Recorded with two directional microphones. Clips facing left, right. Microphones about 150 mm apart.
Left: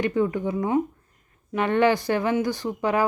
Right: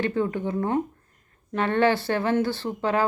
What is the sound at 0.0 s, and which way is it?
Speech, 15° left (ahead or behind).